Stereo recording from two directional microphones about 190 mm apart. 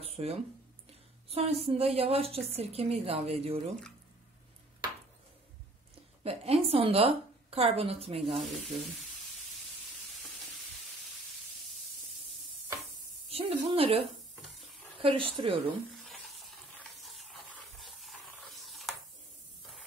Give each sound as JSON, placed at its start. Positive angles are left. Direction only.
{"t": 0.0, "sound": "a sound", "side_deg": -30}
{"t": 1.3, "sound": "a woman's voice", "side_deg": -30}
{"t": 6.2, "sound": "a woman's voice", "side_deg": -30}
{"t": 8.3, "sound": "sanding", "side_deg": 0}
{"t": 13.3, "sound": "a woman's voice", "side_deg": -30}
{"t": 15.9, "sound": "stir", "side_deg": 0}